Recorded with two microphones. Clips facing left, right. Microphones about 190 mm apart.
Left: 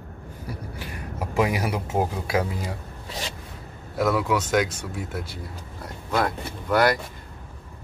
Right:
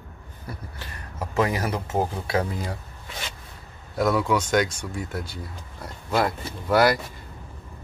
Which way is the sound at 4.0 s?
Centre (ahead or behind).